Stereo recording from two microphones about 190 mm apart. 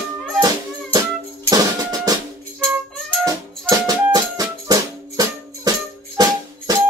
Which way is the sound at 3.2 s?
15° right (ahead or behind).